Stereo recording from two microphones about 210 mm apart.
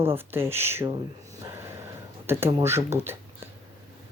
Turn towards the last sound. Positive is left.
turn(degrees=-10)  # may be behind; listen again after turning